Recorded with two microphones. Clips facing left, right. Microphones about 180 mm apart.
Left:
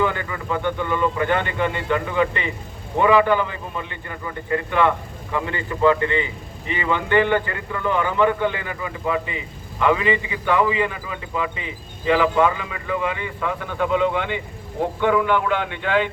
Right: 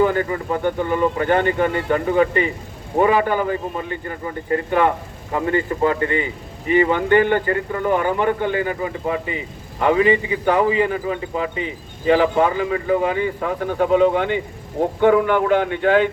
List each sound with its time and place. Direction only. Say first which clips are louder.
0.0 s speech: right 5 dB; 40° right (ahead or behind)